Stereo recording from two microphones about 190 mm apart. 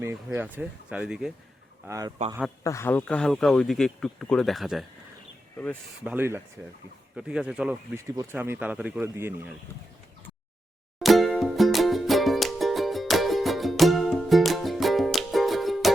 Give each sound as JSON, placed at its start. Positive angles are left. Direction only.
{"t": 0.0, "sound": "speech", "side_deg": -10}
{"t": 1.9, "sound": "a man's voice", "side_deg": -20}
{"t": 2.6, "sound": "speech", "side_deg": 15}
{"t": 6.1, "sound": "speech", "side_deg": -10}
{"t": 11.0, "sound": "music", "side_deg": 0}